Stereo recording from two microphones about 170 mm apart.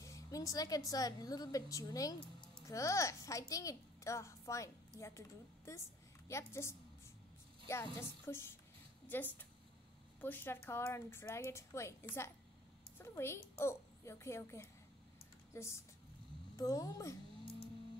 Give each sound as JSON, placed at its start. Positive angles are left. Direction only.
{"t": 0.0, "sound": "a woman's voice", "side_deg": 20}
{"t": 5.7, "sound": "a woman's voice", "side_deg": 15}